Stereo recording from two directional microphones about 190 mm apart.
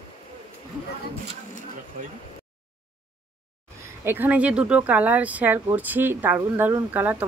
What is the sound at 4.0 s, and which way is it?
Speech, 10° right (ahead or behind).